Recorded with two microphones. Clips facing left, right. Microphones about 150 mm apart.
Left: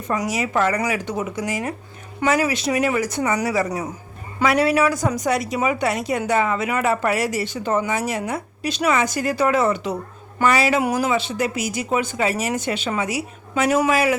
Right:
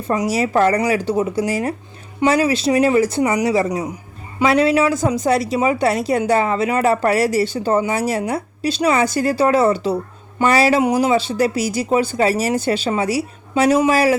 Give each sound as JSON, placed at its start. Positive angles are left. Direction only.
{"t": 0.1, "sound": "a woman's voice", "side_deg": -30}
{"t": 10.8, "sound": "a woman's voice", "side_deg": -25}
{"t": 13.6, "sound": "speech", "side_deg": -25}
{"t": 13.9, "sound": "a woman's voice", "side_deg": -35}